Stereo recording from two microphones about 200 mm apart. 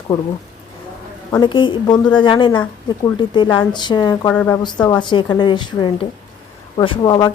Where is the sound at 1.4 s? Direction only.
25° left (ahead or behind).